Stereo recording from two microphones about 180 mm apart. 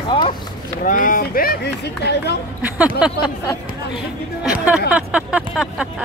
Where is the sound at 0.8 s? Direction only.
50° left (ahead or behind); by 2.3 s 65° left (ahead or behind).